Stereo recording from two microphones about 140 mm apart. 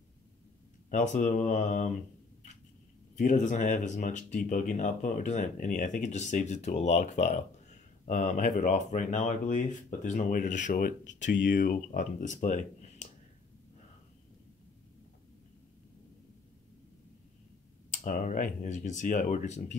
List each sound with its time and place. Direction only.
0.8 s speech: 70° left (ahead or behind)
3.2 s speech: 60° left (ahead or behind)
17.9 s speech: 70° left (ahead or behind)